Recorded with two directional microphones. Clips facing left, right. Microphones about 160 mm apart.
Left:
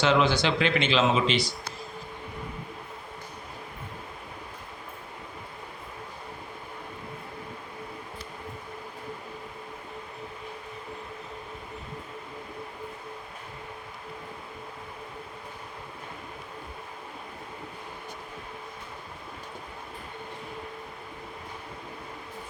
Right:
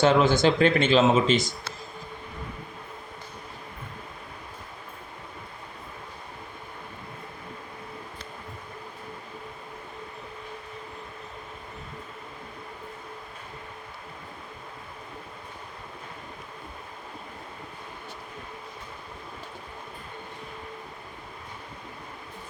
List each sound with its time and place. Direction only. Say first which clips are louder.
0.0 s speech: right 4 dB; 50° right (ahead or behind)